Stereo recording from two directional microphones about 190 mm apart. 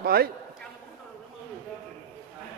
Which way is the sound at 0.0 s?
55° right (ahead or behind).